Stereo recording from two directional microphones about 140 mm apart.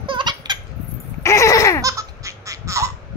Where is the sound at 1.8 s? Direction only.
25° right (ahead or behind).